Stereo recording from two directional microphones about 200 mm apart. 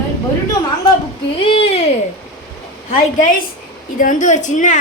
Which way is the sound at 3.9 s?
40° left (ahead or behind).